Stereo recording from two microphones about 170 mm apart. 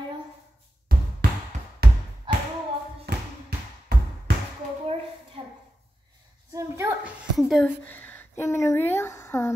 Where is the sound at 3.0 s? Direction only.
60° right (ahead or behind).